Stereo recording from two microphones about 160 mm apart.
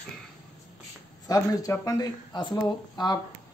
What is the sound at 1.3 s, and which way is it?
Speech, 20° left (ahead or behind).